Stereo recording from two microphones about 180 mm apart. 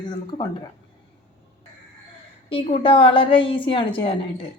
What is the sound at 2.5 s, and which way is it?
A woman's voice, 30° left (ahead or behind).